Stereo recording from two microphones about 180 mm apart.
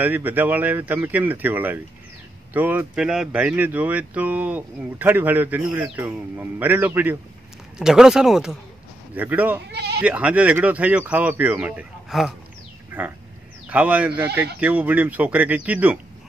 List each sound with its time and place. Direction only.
0.0 s speech: 10° right (ahead or behind)
9.7 s speech: 70° right (ahead or behind)
10.0 s speech: 5° right (ahead or behind)